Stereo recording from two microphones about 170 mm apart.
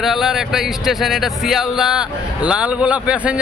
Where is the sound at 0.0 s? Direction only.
Centre (ahead or behind).